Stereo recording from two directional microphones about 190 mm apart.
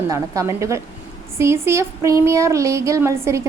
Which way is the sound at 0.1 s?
15° right (ahead or behind).